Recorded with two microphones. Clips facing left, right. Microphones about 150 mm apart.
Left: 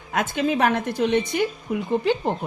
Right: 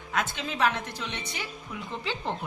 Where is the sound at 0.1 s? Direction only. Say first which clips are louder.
Left 9 dB; 50° left (ahead or behind).